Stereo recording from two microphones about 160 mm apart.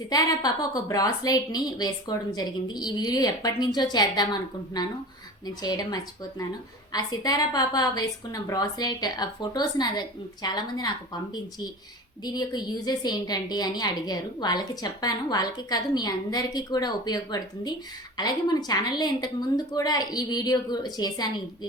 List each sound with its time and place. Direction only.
0.1 s a woman's voice: 25° left (ahead or behind)